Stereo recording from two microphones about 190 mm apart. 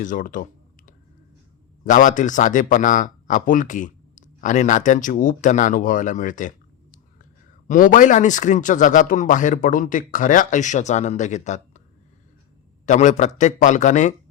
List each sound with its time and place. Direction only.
0.0 s speech: 45° left (ahead or behind)
1.8 s a man's voice: 45° left (ahead or behind)
12.8 s a man's voice: 40° left (ahead or behind)